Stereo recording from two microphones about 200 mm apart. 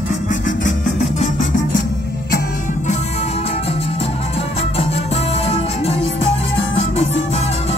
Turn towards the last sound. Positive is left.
turn(degrees=30)  # may be behind; listen again after turning